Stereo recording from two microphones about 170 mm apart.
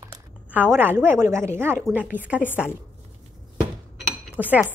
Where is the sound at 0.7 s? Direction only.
10° right (ahead or behind).